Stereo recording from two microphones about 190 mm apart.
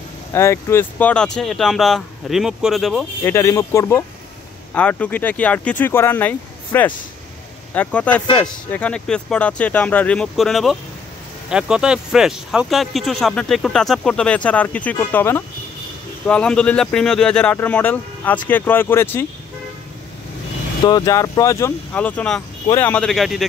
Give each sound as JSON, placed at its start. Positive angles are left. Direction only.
{"t": 0.3, "sound": "speech", "side_deg": 15}
{"t": 3.3, "sound": "speech", "side_deg": 15}
{"t": 20.8, "sound": "speech", "side_deg": 20}